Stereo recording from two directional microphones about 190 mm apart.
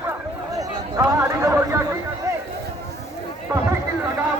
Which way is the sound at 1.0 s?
15° right (ahead or behind).